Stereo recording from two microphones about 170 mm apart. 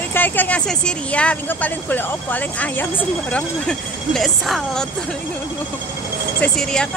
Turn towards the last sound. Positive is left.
turn(degrees=5)  # may be behind; listen again after turning